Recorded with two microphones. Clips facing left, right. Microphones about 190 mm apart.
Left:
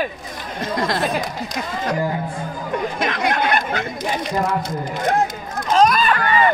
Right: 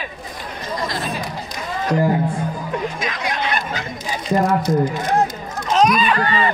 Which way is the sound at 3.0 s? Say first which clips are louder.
Left 4 dB; 60° left (ahead or behind).